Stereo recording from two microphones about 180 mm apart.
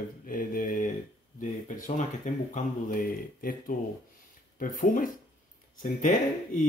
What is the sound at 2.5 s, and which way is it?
Speech, 50° left (ahead or behind).